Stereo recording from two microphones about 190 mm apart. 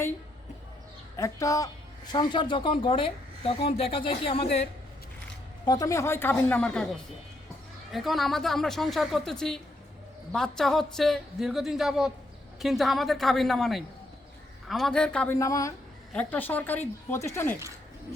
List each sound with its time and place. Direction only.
1.1 s speech: 15° left (ahead or behind)
5.6 s a woman's voice: 20° left (ahead or behind)
15.4 s speech: 15° left (ahead or behind)